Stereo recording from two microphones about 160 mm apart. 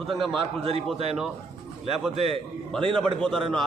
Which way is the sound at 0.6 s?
35° right (ahead or behind).